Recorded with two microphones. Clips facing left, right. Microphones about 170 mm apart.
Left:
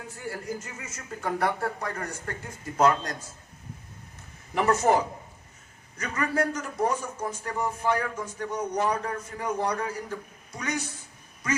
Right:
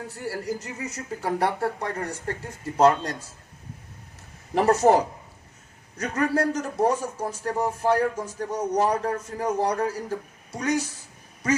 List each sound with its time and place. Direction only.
0.3 s a man's voice: 35° right (ahead or behind)
4.5 s a man's voice: 35° right (ahead or behind)